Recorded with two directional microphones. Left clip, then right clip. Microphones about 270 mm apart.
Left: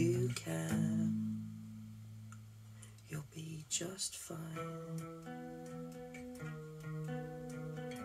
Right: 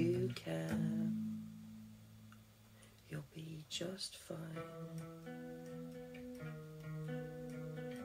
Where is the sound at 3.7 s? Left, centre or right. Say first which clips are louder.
Left 2 dB; centre.